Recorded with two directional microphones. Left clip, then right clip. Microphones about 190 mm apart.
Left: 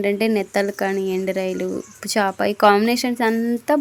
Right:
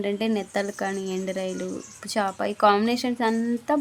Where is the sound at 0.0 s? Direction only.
20° left (ahead or behind).